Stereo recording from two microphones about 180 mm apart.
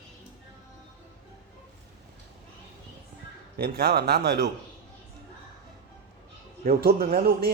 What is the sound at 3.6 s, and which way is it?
Speech, 55° right (ahead or behind).